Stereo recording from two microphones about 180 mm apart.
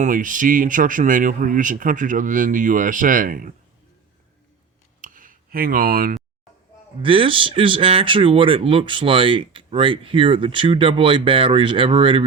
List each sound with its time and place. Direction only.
0.0 s speech: 45° right (ahead or behind)
4.9 s clicking: 45° right (ahead or behind)
7.0 s speech: 30° right (ahead or behind)